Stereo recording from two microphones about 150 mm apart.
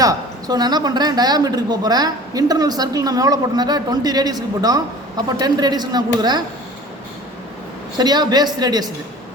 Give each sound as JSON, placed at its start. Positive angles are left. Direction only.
{"t": 0.0, "sound": "a woman's voice", "side_deg": -25}
{"t": 7.9, "sound": "a woman's voice", "side_deg": -30}